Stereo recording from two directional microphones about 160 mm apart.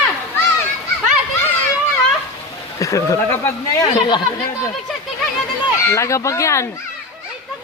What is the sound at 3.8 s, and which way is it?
Speech, 25° left (ahead or behind).